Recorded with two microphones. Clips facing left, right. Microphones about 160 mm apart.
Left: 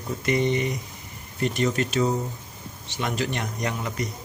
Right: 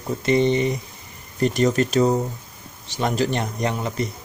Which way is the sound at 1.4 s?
40° right (ahead or behind).